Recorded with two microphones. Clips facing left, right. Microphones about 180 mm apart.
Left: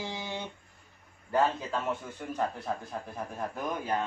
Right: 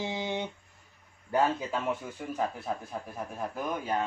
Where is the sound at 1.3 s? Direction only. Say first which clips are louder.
Even; 10° right (ahead or behind).